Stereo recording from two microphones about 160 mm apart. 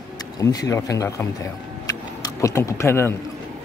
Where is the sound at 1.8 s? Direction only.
20° left (ahead or behind).